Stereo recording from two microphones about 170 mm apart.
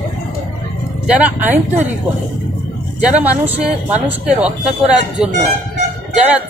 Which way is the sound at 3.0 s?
10° right (ahead or behind).